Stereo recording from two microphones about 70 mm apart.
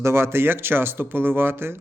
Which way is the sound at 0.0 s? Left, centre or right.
Right.